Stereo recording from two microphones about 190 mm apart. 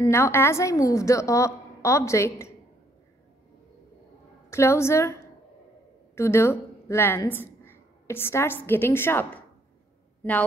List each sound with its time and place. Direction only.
0.0 s a woman's voice: 15° left (ahead or behind)
4.5 s a woman's voice: 15° left (ahead or behind)